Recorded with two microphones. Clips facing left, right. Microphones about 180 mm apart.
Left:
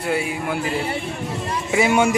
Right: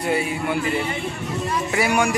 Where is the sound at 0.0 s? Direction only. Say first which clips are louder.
Right 1 dB; centre (ahead or behind).